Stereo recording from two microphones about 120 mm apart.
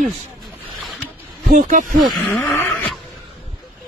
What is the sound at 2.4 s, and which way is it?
Vehicle, 20° left (ahead or behind).